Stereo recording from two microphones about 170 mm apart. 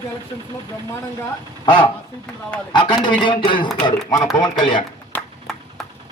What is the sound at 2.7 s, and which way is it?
Speech, 25° left (ahead or behind).